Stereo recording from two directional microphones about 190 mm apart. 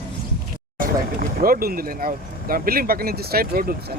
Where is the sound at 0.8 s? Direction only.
50° right (ahead or behind).